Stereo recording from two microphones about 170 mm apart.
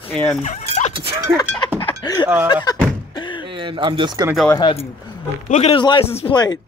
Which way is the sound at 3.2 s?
25° left (ahead or behind).